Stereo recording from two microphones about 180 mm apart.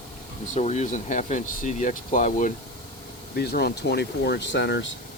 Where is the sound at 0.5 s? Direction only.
40° left (ahead or behind).